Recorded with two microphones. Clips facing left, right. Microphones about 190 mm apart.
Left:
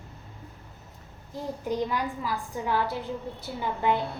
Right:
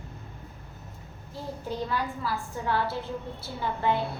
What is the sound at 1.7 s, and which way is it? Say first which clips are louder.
A woman's voice: left 2 dB; 15° left (ahead or behind).